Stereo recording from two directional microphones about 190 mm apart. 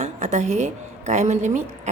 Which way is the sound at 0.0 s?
35° right (ahead or behind).